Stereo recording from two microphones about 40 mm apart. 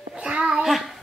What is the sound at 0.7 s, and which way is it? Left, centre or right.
Child singing, centre.